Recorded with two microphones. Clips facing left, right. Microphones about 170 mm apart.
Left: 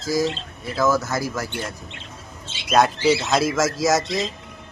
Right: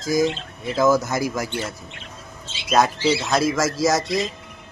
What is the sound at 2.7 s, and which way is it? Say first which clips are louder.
Speech: left 1 dB; centre (ahead or behind).